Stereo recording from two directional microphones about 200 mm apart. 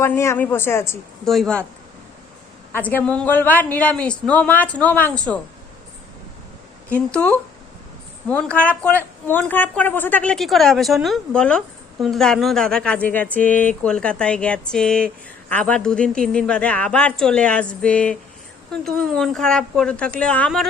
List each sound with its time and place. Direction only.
0.0 s a woman's voice: 15° left (ahead or behind)
1.2 s a woman's voice: centre (ahead or behind)
2.7 s a woman's voice: 10° left (ahead or behind)
6.9 s a woman's voice: 5° left (ahead or behind)